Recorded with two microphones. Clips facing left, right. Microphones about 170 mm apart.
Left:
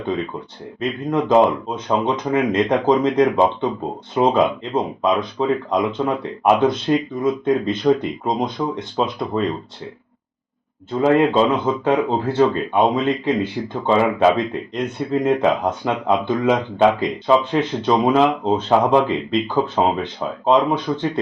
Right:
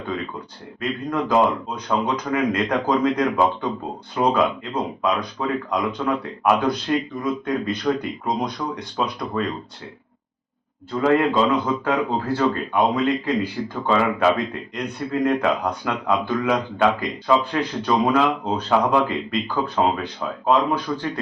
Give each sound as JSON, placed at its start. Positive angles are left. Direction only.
{"t": 0.8, "sound": "speech", "side_deg": 25}
{"t": 10.9, "sound": "speech", "side_deg": 25}